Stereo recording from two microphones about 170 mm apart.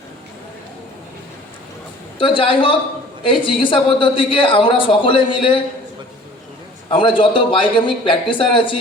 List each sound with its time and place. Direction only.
2.1 s a man's voice: 30° left (ahead or behind)
6.9 s a man's voice: 30° left (ahead or behind)